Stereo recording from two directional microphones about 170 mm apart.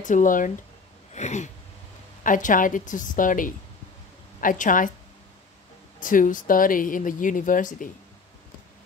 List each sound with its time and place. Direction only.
0.0 s speech: 50° left (ahead or behind)
1.1 s a sound: 45° left (ahead or behind)
2.2 s speech: 50° left (ahead or behind)
5.9 s speech: 50° left (ahead or behind)